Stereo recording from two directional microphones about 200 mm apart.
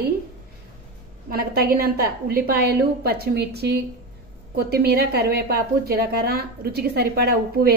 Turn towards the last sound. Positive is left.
turn(degrees=-50)  # may be behind; listen again after turning